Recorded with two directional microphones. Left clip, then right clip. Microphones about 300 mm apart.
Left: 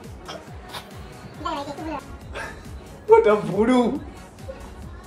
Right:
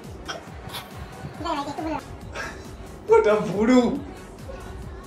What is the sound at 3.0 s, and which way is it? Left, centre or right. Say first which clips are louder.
Speech: left 2 dB; left.